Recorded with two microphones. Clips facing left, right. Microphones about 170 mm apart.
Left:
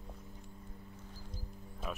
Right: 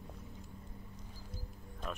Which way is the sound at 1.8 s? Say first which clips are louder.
Left 1 dB; 5° left (ahead or behind).